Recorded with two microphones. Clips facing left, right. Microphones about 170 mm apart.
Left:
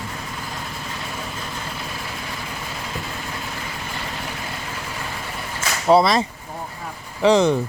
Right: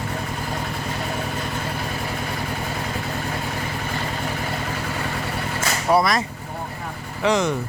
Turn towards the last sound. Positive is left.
turn(degrees=30)  # may be behind; listen again after turning